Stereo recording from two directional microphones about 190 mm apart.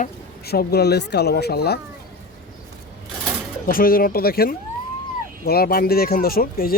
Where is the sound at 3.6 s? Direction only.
50° left (ahead or behind).